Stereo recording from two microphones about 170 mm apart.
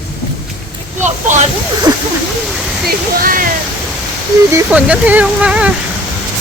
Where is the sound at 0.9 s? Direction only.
45° right (ahead or behind).